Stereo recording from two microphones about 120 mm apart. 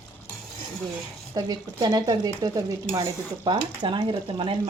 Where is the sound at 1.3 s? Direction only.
35° right (ahead or behind).